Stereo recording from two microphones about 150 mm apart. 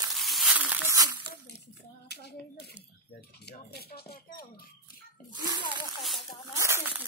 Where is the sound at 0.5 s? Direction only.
10° right (ahead or behind).